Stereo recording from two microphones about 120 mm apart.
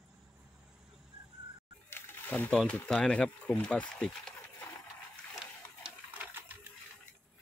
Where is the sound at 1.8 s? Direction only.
20° left (ahead or behind).